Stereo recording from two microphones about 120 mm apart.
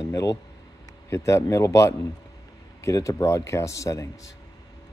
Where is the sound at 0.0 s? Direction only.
30° left (ahead or behind).